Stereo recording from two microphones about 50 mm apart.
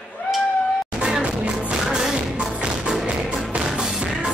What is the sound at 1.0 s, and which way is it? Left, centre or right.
Music, centre.